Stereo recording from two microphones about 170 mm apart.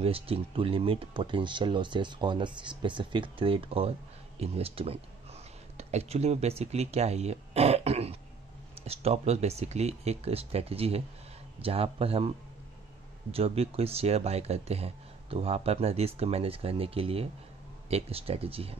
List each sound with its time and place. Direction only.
0.0 s speech: 35° right (ahead or behind)
13.3 s speech: 35° right (ahead or behind)